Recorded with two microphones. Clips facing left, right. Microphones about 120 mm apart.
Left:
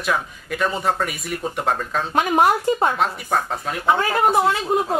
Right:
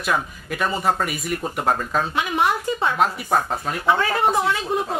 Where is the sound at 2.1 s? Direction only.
45° left (ahead or behind).